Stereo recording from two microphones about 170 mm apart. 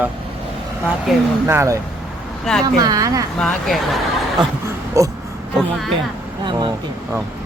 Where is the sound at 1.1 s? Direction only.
Centre (ahead or behind).